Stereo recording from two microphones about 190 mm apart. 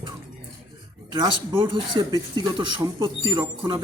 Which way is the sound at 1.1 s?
25° right (ahead or behind).